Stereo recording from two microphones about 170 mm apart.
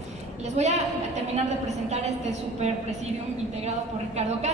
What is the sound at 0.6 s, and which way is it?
Speech, 40° right (ahead or behind).